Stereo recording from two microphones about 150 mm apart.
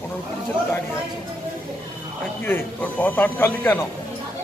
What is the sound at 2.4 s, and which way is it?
Speech, 15° left (ahead or behind).